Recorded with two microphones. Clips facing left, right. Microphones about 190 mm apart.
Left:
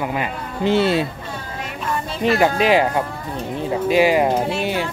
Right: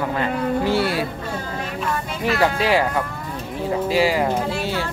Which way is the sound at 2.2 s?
20° left (ahead or behind).